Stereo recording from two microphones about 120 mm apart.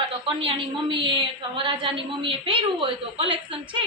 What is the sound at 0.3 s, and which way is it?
A woman's voice, 45° right (ahead or behind).